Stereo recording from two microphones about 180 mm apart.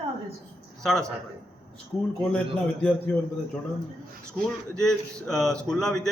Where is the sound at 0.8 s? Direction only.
Centre (ahead or behind).